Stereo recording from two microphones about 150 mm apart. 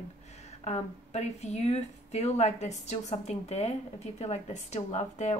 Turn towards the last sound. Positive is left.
turn(degrees=50)  # may be behind; listen again after turning